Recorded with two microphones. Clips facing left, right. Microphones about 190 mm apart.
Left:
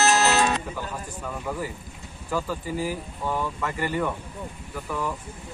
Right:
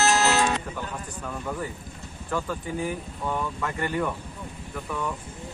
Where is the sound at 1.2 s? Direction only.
5° left (ahead or behind).